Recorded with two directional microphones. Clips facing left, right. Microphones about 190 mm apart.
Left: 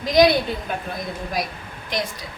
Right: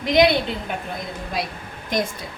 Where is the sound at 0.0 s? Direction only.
25° right (ahead or behind).